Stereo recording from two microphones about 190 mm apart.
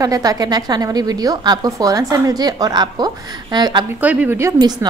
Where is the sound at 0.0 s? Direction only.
20° right (ahead or behind).